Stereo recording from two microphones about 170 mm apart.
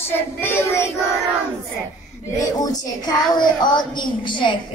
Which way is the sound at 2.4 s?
20° left (ahead or behind).